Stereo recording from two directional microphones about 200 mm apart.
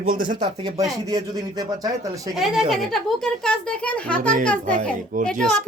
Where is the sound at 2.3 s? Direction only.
Centre (ahead or behind).